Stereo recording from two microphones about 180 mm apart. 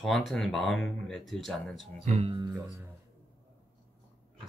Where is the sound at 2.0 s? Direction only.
35° right (ahead or behind).